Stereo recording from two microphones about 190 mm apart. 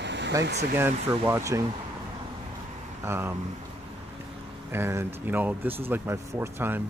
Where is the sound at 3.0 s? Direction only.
10° right (ahead or behind).